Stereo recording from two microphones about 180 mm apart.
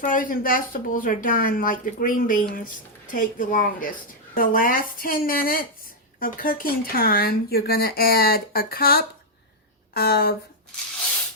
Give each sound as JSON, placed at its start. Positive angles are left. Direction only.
{"t": 0.0, "sound": "speech", "side_deg": 50}